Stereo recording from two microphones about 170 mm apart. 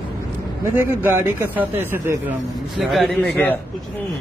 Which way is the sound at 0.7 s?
15° right (ahead or behind).